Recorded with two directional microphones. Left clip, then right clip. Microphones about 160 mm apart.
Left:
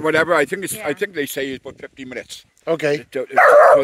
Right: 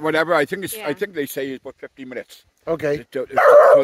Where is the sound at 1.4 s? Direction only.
30° left (ahead or behind).